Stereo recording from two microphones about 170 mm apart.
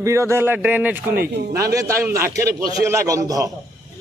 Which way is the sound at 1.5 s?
20° right (ahead or behind).